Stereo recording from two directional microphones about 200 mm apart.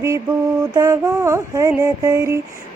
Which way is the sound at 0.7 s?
20° right (ahead or behind).